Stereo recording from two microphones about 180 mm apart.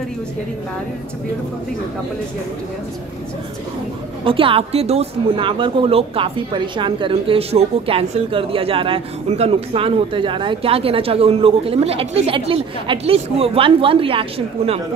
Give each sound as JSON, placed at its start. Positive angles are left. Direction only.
{"t": 4.2, "sound": "speech", "side_deg": -30}